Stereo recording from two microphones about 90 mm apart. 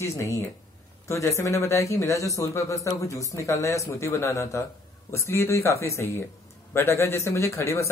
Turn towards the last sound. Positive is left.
turn(degrees=35)  # may be behind; listen again after turning